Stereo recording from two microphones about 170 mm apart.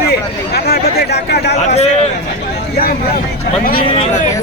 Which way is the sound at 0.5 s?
70° left (ahead or behind).